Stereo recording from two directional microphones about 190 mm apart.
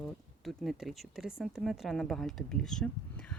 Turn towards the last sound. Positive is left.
turn(degrees=5)  # may be behind; listen again after turning